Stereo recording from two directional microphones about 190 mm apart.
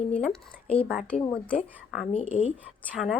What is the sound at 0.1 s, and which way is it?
Speech, 5° left (ahead or behind).